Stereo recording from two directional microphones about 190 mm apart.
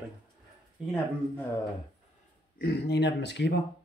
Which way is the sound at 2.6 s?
60° left (ahead or behind).